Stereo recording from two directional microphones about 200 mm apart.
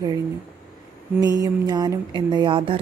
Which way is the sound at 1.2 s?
20° right (ahead or behind).